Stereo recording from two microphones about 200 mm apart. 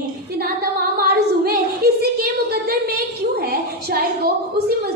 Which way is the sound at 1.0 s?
50° right (ahead or behind).